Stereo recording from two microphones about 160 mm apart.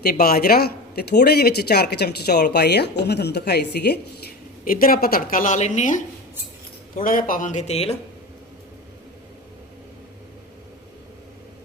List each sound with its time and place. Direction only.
0.0 s a woman's voice: 70° left (ahead or behind); by 4.0 s 90° left
4.6 s speech: 60° left (ahead or behind)
6.9 s speech: 60° left (ahead or behind); by 7.9 s 40° left (ahead or behind)